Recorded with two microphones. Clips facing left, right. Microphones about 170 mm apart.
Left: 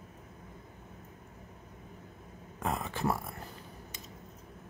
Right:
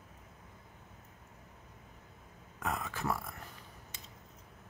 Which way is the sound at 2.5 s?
25° left (ahead or behind).